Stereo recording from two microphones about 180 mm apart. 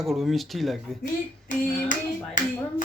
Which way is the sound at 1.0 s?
45° left (ahead or behind).